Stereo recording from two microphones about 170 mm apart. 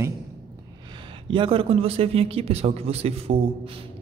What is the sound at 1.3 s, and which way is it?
A man's voice, 30° right (ahead or behind).